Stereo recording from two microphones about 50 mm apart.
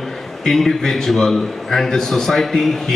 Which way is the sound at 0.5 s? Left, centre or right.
Centre.